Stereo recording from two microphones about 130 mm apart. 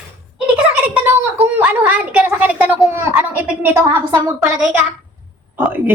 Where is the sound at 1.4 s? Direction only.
15° right (ahead or behind).